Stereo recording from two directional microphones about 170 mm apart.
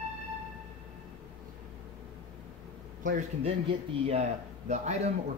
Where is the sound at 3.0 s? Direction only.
50° right (ahead or behind).